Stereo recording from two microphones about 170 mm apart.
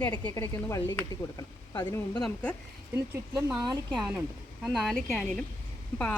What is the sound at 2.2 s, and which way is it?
Speech, 10° left (ahead or behind).